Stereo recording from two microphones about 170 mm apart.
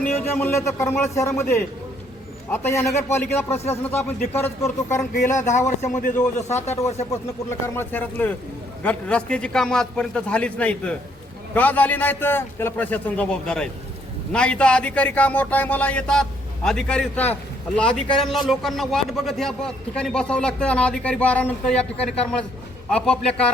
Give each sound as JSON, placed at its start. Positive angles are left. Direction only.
{"t": 0.3, "sound": "a man's voice", "side_deg": 15}
{"t": 2.5, "sound": "a man's voice", "side_deg": 15}
{"t": 5.5, "sound": "a man's voice", "side_deg": 45}
{"t": 7.8, "sound": "a man's voice", "side_deg": 10}